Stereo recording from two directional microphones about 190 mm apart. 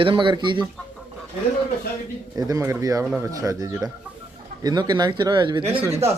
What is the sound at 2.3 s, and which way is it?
Speech, 20° right (ahead or behind).